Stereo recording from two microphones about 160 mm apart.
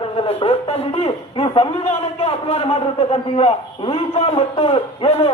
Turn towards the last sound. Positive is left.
turn(degrees=40)  # may be behind; listen again after turning